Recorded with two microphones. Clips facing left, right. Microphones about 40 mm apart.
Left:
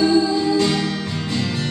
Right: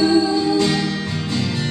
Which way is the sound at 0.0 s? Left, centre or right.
Centre.